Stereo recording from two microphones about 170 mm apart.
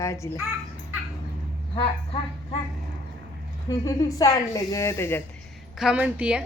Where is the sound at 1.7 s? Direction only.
35° left (ahead or behind).